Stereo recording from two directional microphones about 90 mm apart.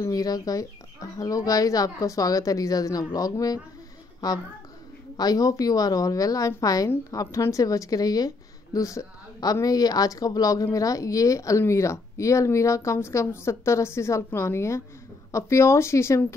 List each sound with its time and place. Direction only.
0.0 s speech: 45° left (ahead or behind)
5.1 s speech: 45° left (ahead or behind)